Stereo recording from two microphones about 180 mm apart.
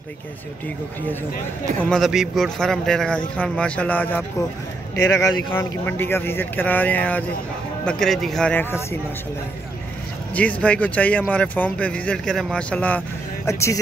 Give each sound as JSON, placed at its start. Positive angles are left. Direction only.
{"t": 1.8, "sound": "speech", "side_deg": 0}
{"t": 10.3, "sound": "speech", "side_deg": 10}